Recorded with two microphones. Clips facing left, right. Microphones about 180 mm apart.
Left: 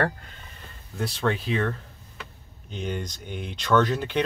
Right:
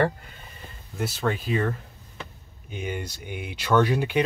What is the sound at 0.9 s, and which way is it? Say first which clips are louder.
Speech: left 1 dB; 5° right (ahead or behind).